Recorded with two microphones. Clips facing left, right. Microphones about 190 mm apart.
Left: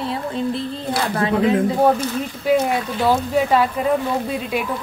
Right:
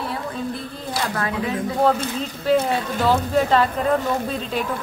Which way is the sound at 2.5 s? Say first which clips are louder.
Left 1 dB; 10° left (ahead or behind).